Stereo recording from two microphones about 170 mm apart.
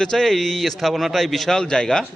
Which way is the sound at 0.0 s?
5° left (ahead or behind).